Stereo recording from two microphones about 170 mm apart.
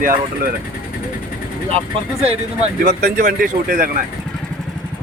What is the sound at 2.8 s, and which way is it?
Speech, 65° right (ahead or behind).